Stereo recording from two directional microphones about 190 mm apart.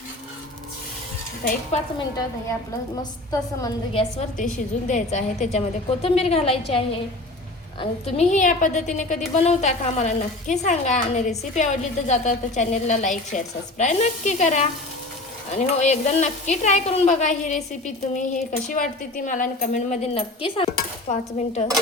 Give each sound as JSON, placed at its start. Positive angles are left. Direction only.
{"t": 3.0, "sound": "a woman's voice", "side_deg": 20}
{"t": 4.4, "sound": "a woman's voice", "side_deg": 40}
{"t": 20.7, "sound": "cutlery", "side_deg": 40}